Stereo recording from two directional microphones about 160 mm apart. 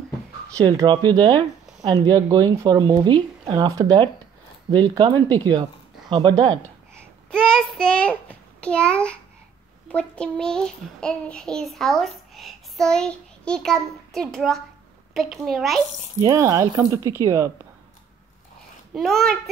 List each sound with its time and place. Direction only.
0.6 s speech: 25° right (ahead or behind)
7.2 s child singing: 5° left (ahead or behind)
8.5 s a child's voice: 5° left (ahead or behind)
16.2 s speech: 20° right (ahead or behind)
18.9 s a child's voice: centre (ahead or behind)